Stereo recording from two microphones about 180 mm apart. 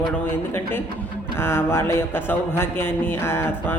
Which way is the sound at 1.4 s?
15° left (ahead or behind).